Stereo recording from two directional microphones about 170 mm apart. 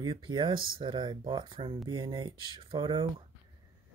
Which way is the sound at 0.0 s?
25° right (ahead or behind).